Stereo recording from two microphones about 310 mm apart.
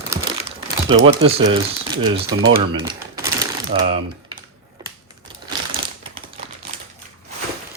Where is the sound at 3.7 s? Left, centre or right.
Right.